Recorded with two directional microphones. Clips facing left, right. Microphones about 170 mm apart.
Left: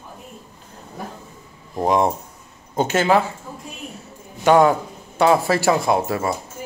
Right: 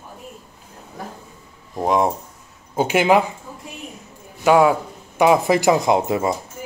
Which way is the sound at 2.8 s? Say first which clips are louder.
Right 1 dB; 10° right (ahead or behind).